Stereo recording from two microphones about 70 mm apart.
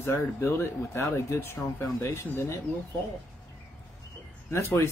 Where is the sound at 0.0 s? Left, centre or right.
Left.